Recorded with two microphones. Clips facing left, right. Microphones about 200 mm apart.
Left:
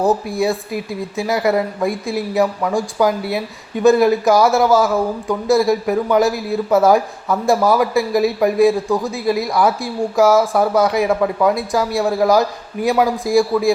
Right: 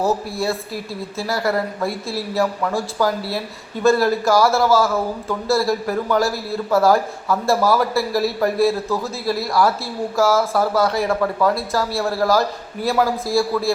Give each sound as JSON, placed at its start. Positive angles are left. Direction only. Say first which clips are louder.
{"t": 0.0, "sound": "a man's voice", "louder": "left 4 dB", "side_deg": 15}